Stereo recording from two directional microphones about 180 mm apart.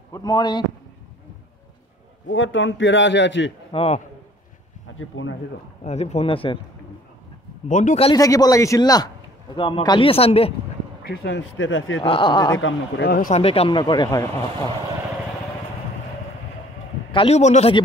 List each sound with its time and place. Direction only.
0.1 s speech: 20° left (ahead or behind)
2.2 s a man's voice: 90° left
3.7 s speech: 35° left (ahead or behind)
4.9 s a man's voice: 90° left
5.9 s speech: 40° left (ahead or behind)
7.6 s speech: 45° left (ahead or behind)
8.1 s speech: 20° left (ahead or behind)
11.1 s a man's voice: 75° left (ahead or behind); by 12.0 s 90° left
12.0 s speech: 30° left (ahead or behind)
12.5 s speech: 85° left; by 13.3 s 60° left (ahead or behind)
13.3 s speech: 35° left (ahead or behind)
17.1 s a man's voice: 30° left (ahead or behind)
17.4 s speech: 40° left (ahead or behind)